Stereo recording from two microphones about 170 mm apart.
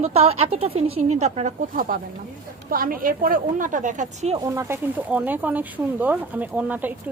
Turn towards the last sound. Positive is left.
turn(degrees=-10)  # may be behind; listen again after turning